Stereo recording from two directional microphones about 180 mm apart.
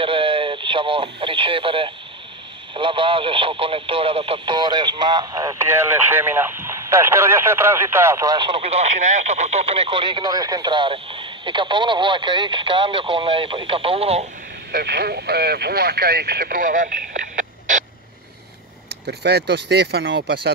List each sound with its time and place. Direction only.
0.0 s radio: 30° right (ahead or behind)
2.7 s speech: 30° right (ahead or behind)
14.7 s speech: 65° right (ahead or behind); by 17.8 s 45° right (ahead or behind)
19.0 s speech: 65° right (ahead or behind)